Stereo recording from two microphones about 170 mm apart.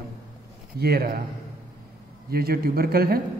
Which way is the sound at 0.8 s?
65° right (ahead or behind).